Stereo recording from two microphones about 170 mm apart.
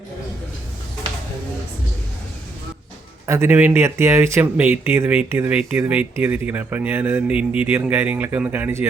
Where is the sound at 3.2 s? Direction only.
15° right (ahead or behind).